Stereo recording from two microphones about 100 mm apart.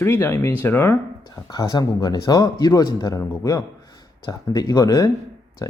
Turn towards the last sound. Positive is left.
turn(degrees=35)  # may be behind; listen again after turning